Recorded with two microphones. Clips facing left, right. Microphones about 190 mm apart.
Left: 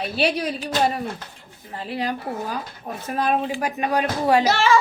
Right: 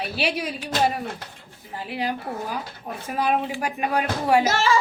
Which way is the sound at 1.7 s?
10° right (ahead or behind).